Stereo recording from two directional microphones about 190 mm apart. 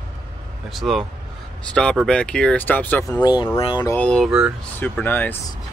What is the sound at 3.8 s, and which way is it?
Speech, 10° left (ahead or behind).